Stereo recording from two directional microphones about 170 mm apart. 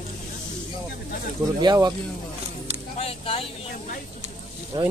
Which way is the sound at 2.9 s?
35° left (ahead or behind).